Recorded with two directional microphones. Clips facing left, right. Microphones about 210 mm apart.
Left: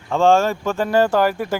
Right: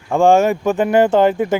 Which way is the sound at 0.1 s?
15° right (ahead or behind).